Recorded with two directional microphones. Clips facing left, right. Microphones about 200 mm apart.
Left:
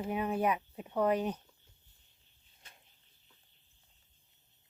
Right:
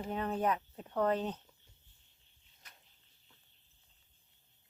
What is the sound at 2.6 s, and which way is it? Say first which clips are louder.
Cricket: left 1 dB; 25° left (ahead or behind).